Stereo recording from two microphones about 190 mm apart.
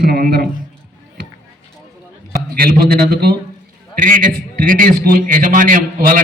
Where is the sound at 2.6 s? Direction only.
50° right (ahead or behind).